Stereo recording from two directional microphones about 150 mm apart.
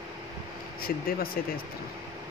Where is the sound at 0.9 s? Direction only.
80° left.